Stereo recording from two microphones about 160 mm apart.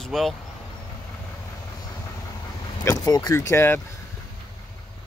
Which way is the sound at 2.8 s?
20° left (ahead or behind).